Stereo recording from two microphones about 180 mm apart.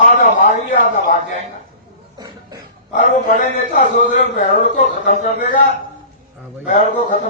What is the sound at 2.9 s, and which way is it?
Speech, 45° left (ahead or behind).